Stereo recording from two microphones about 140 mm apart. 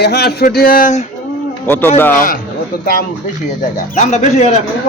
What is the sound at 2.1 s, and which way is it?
Speech, 80° left.